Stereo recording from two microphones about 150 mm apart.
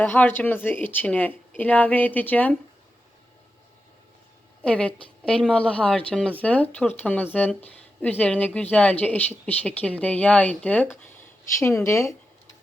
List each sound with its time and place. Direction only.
0.0 s speech: 10° left (ahead or behind)
4.6 s speech: 10° left (ahead or behind)